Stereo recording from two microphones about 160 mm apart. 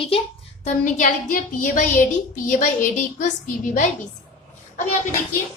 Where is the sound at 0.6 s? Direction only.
55° left (ahead or behind).